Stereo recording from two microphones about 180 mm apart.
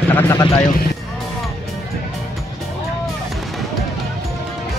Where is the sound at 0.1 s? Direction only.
15° left (ahead or behind).